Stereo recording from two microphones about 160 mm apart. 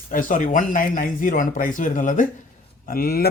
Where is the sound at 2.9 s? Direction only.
70° left (ahead or behind).